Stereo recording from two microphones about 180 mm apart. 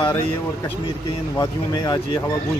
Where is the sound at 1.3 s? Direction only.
20° left (ahead or behind).